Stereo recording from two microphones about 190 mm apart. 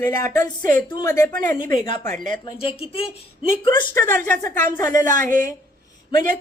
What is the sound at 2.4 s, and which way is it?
Speech, 25° left (ahead or behind).